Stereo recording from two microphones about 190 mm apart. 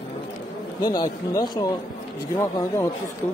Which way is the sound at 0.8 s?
20° left (ahead or behind).